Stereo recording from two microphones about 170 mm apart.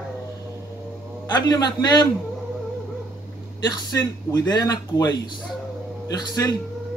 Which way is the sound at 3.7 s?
25° left (ahead or behind).